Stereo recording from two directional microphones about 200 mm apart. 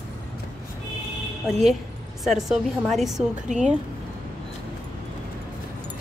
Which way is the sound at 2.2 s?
Centre (ahead or behind).